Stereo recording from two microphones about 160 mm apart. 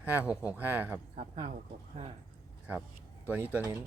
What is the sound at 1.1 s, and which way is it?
Speech, 45° right (ahead or behind).